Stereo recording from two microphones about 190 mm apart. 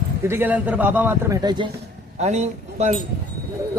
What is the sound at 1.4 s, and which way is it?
Speech, 20° right (ahead or behind).